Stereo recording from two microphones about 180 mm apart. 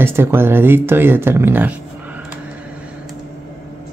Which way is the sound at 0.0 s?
15° right (ahead or behind).